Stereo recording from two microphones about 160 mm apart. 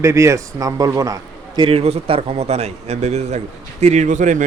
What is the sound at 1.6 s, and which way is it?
Speech, 40° right (ahead or behind).